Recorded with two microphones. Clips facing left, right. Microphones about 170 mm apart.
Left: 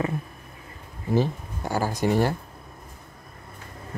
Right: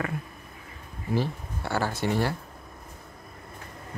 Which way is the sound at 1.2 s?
15° left (ahead or behind).